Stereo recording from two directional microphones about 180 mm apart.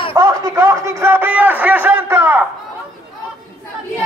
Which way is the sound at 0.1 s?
15° right (ahead or behind).